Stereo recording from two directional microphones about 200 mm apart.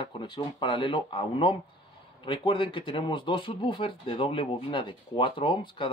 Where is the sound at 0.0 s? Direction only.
25° left (ahead or behind).